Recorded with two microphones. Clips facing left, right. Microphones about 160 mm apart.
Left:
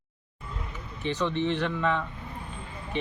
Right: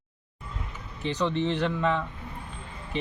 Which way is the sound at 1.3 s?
35° right (ahead or behind).